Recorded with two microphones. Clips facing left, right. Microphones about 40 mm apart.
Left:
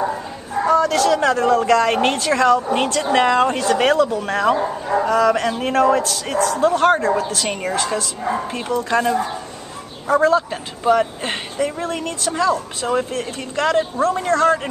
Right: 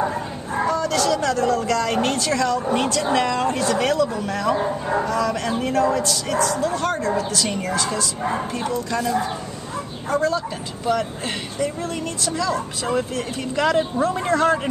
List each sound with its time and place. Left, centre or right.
0.7 s speech: left
13.1 s a man's voice: centre